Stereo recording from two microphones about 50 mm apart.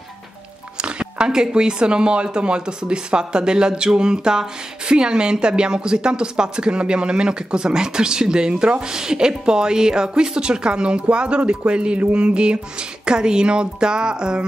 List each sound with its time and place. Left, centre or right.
0.7 s speech: centre